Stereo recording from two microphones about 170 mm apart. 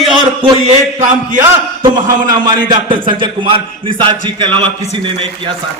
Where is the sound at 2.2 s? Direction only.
25° right (ahead or behind).